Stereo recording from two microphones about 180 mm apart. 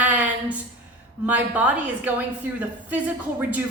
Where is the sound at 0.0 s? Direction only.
10° right (ahead or behind).